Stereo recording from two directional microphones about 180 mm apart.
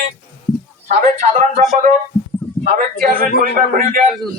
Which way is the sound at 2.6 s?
50° right (ahead or behind).